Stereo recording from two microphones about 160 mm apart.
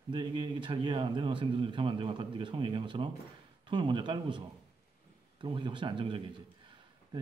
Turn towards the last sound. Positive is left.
turn(degrees=-30)  # may be behind; listen again after turning